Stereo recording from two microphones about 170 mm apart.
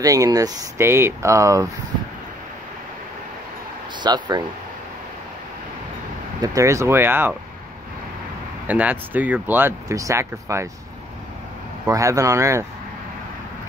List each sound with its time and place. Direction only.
0.0 s speech: 20° right (ahead or behind)
4.0 s speech: 25° right (ahead or behind)
6.4 s speech: 20° right (ahead or behind)
8.6 s speech: 10° right (ahead or behind)
11.9 s speech: 20° right (ahead or behind)